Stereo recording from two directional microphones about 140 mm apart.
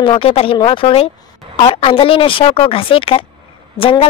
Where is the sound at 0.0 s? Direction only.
40° left (ahead or behind).